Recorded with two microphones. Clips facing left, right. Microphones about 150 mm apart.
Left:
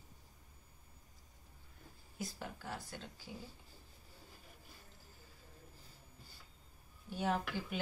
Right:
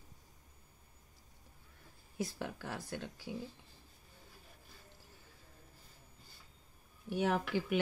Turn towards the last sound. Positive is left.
turn(degrees=-70)  # may be behind; listen again after turning